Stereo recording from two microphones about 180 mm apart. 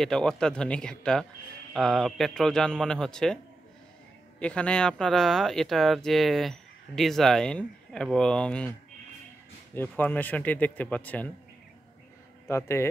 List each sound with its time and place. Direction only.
0.0 s speech: 5° left (ahead or behind)
4.4 s speech: 5° left (ahead or behind)
9.8 s speech: 10° left (ahead or behind)
12.4 s speech: 15° left (ahead or behind)